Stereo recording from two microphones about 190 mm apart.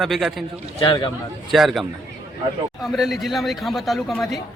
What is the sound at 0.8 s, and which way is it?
Speech, 25° left (ahead or behind).